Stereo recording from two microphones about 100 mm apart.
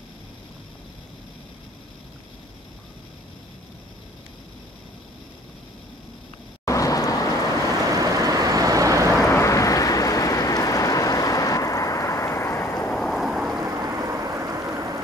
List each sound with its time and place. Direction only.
6.6 s vehicle: 35° left (ahead or behind)
7.9 s vehicle: 35° right (ahead or behind)
9.3 s a sound: 30° left (ahead or behind)
12.9 s vehicle: centre (ahead or behind)
13.6 s vehicle: 30° right (ahead or behind)